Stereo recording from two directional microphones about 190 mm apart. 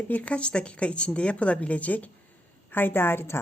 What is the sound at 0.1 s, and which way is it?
Speech, 5° left (ahead or behind).